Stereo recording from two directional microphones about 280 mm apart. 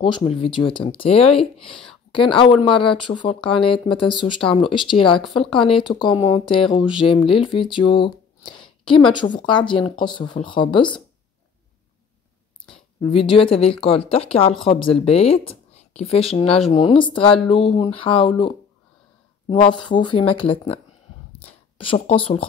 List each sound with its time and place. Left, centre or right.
0.0 s speech: centre
13.1 s speech: centre
19.5 s speech: centre